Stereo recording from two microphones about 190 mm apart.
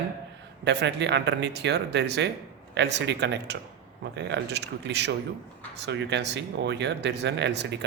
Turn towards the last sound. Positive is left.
turn(degrees=-65)  # may be behind; listen again after turning